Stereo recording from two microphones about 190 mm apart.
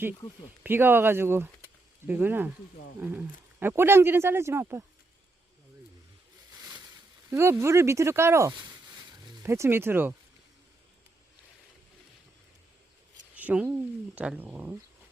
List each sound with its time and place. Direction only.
0.6 s speech: 10° right (ahead or behind)
6.6 s a sound: 20° right (ahead or behind)
7.3 s speech: 15° right (ahead or behind)
13.3 s speech: 5° right (ahead or behind)